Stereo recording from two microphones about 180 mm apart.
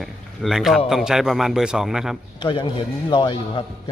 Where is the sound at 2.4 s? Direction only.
25° left (ahead or behind).